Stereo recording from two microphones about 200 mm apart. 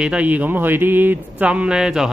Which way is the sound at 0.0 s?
5° right (ahead or behind).